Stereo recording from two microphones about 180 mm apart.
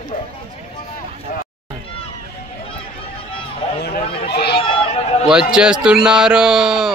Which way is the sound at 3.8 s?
60° left (ahead or behind).